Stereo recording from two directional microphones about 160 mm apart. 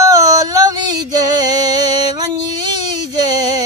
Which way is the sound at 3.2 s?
25° right (ahead or behind).